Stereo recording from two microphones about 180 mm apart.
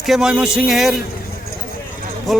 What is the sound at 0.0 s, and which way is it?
Speech, centre (ahead or behind).